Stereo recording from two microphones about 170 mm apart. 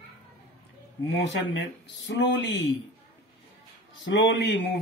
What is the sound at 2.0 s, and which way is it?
Speech, 90° left.